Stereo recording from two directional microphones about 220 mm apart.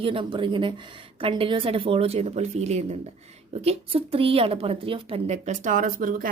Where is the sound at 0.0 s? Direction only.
25° right (ahead or behind).